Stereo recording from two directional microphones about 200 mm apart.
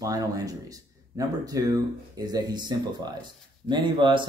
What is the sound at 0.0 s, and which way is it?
Speech, 15° right (ahead or behind).